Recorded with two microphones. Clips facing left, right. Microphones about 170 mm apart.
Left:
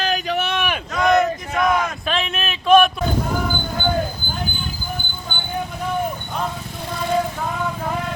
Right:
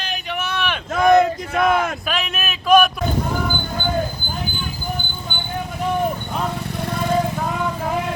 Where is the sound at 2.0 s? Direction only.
5° right (ahead or behind).